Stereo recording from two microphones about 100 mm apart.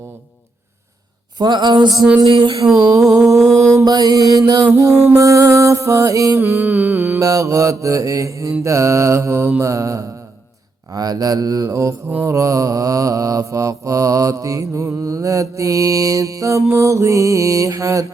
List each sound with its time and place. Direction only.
1.4 s a sound: 45° right (ahead or behind)
2.2 s music: 55° right (ahead or behind)
3.0 s music: 5° right (ahead or behind)
3.8 s mantra: 40° right (ahead or behind)
6.4 s music: 20° right (ahead or behind)
7.2 s mantra: 35° right (ahead or behind)